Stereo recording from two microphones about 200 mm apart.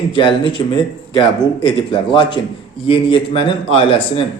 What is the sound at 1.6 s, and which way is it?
A man's voice, 25° left (ahead or behind).